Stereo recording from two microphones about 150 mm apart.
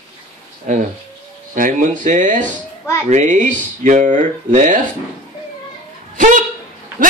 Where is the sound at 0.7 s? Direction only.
55° right (ahead or behind).